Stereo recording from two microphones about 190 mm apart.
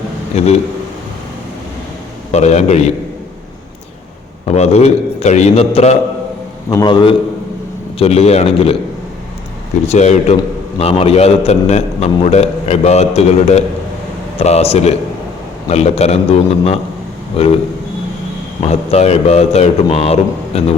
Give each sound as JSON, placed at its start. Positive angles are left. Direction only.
{"t": 0.3, "sound": "a man's voice", "side_deg": 35}
{"t": 2.3, "sound": "a man's voice", "side_deg": 35}
{"t": 4.4, "sound": "a man's voice", "side_deg": 35}
{"t": 6.7, "sound": "a man's voice", "side_deg": 20}
{"t": 9.8, "sound": "a man's voice", "side_deg": 35}
{"t": 18.6, "sound": "a man's voice", "side_deg": 35}